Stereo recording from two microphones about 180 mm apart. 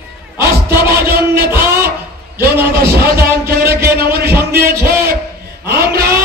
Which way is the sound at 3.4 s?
60° right (ahead or behind).